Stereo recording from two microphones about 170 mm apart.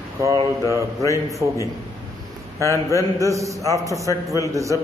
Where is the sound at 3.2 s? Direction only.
20° right (ahead or behind).